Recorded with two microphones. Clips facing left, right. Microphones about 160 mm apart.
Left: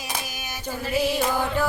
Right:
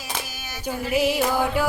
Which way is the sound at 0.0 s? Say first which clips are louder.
Even; 15° left (ahead or behind).